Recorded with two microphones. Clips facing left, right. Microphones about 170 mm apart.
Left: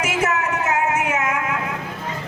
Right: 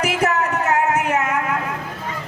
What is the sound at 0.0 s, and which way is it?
Music, 35° right (ahead or behind).